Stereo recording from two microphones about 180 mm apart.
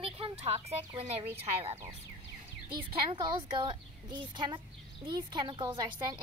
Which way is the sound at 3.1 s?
25° right (ahead or behind).